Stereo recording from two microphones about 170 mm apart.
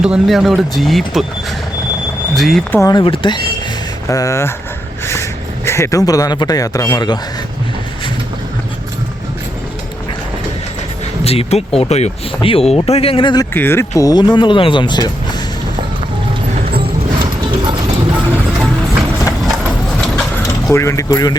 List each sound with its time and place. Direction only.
0.0 s speech: 5° right (ahead or behind)
2.8 s speech: 25° left (ahead or behind)
4.1 s speech: 20° left (ahead or behind)
11.2 s speech: 35° left (ahead or behind)
13.5 s speech: 15° left (ahead or behind)
16.8 s music: 30° right (ahead or behind)
20.0 s mechanisms: 5° left (ahead or behind)
20.7 s speech: 15° left (ahead or behind)